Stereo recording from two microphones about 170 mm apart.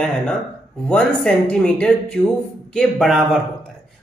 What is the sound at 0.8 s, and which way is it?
Speech, 5° left (ahead or behind).